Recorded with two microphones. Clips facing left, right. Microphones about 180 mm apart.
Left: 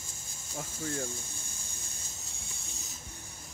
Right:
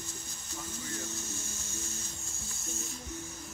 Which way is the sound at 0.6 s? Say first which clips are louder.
Left 5 dB; 50° left (ahead or behind).